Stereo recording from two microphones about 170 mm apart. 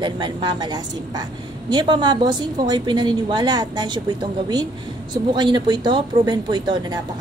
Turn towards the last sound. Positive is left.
turn(degrees=-25)  # may be behind; listen again after turning